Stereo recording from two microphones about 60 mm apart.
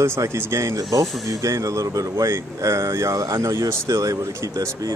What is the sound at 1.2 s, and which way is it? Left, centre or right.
Speech, right.